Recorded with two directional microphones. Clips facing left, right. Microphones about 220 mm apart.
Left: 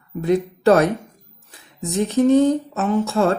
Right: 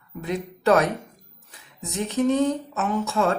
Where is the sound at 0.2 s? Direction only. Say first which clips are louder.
Left 10 dB; 35° left (ahead or behind).